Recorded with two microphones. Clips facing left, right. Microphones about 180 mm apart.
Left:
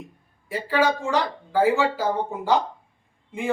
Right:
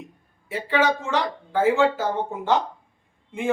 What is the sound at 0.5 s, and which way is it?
Speech, centre (ahead or behind).